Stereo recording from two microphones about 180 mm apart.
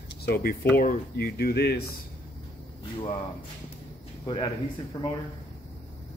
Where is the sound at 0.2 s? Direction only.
60° left (ahead or behind).